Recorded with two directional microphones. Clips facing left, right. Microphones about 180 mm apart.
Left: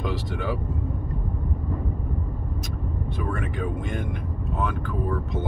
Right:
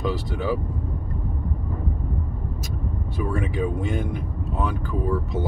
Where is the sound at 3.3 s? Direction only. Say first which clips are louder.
Right 4 dB; 5° right (ahead or behind).